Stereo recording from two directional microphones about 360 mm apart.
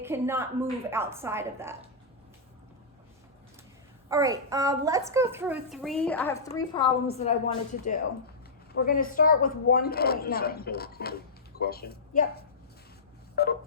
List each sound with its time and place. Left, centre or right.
0.0 s a woman's voice: centre
4.1 s a child's voice: centre; by 12.5 s left
13.3 s a sound: left